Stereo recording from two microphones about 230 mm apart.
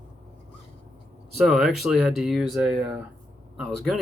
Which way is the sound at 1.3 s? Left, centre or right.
Centre.